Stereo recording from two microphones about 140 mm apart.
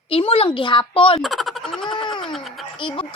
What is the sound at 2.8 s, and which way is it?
Speech, 40° left (ahead or behind).